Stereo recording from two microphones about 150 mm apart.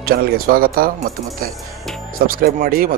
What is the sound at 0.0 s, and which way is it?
Speech, 85° right.